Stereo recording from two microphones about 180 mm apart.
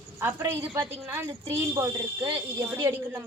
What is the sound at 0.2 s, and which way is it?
A woman's voice, 15° right (ahead or behind).